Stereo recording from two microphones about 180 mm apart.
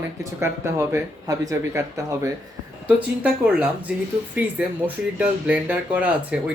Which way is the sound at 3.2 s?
5° right (ahead or behind).